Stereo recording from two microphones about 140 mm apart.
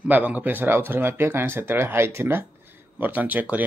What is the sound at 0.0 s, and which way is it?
Speech, 10° right (ahead or behind).